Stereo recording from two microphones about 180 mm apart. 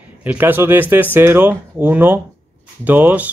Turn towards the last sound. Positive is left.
turn(degrees=-10)  # may be behind; listen again after turning